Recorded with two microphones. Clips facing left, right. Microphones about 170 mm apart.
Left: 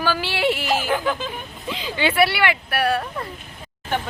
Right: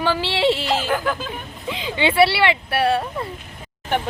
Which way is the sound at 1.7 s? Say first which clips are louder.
Right 2 dB; 20° right (ahead or behind).